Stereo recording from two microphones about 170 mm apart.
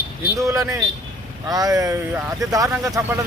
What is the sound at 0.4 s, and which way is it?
Speech, 20° right (ahead or behind).